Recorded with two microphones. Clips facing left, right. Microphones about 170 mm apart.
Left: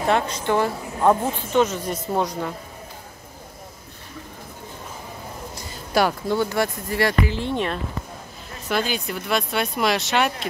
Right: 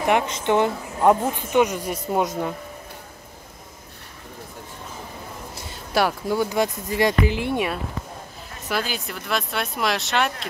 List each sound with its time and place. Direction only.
0.0 s speech: 20° right (ahead or behind)
5.5 s a sound: 5° right (ahead or behind)
6.3 s speech: 15° right (ahead or behind); by 10.5 s centre (ahead or behind)